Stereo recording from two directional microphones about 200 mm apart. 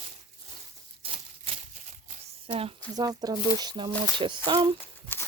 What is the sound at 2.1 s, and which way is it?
Speech, 30° right (ahead or behind).